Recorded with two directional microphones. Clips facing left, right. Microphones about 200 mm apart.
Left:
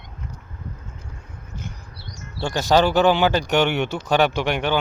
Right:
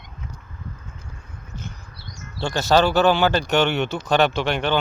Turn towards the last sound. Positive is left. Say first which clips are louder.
# even
turn(degrees=15)  # may be behind; listen again after turning